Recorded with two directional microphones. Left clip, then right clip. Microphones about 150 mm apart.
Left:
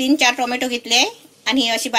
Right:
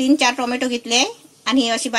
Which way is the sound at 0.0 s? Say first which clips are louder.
Left 1 dB; 70° right (ahead or behind).